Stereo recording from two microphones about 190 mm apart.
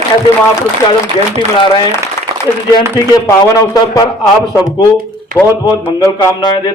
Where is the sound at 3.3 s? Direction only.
15° left (ahead or behind).